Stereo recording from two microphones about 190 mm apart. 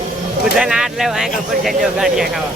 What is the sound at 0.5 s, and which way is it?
Speech, centre (ahead or behind).